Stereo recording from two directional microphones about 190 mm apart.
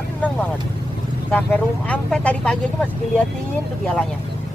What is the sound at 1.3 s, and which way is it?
Speech, 5° left (ahead or behind).